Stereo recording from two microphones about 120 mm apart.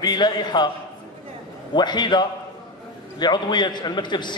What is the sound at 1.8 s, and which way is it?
A man's voice, 40° left (ahead or behind).